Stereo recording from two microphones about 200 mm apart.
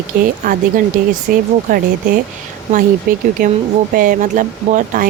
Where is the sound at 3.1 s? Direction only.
45° right (ahead or behind).